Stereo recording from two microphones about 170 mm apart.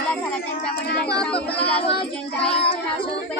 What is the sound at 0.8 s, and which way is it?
Speech, 70° left (ahead or behind).